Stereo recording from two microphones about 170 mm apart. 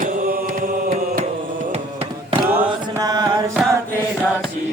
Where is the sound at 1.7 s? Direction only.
35° right (ahead or behind).